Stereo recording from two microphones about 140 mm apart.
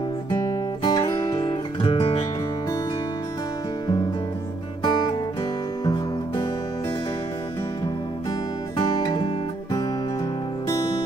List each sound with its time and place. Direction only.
0.3 s music: 25° left (ahead or behind)
4.8 s music: 30° left (ahead or behind)
7.8 s music: 30° left (ahead or behind)